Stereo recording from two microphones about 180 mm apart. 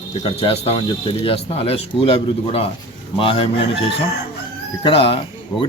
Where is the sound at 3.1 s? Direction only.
30° left (ahead or behind).